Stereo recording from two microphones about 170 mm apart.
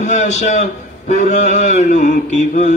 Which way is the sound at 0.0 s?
45° left (ahead or behind).